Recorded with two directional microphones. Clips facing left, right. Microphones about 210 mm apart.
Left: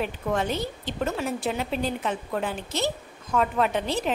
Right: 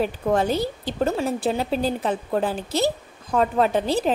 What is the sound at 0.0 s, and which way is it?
A woman's voice, 35° right (ahead or behind).